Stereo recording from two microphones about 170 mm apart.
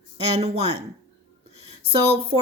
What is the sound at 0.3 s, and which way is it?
Speech, 35° right (ahead or behind).